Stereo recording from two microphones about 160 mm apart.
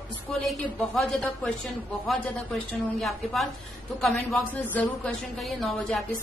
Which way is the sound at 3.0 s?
Centre (ahead or behind).